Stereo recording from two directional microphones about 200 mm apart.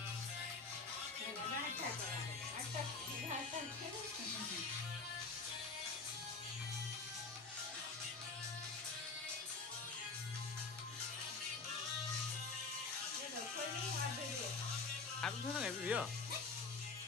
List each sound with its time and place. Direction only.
15.2 s speech: 5° right (ahead or behind)